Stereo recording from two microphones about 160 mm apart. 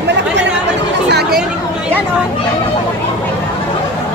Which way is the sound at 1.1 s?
90° right.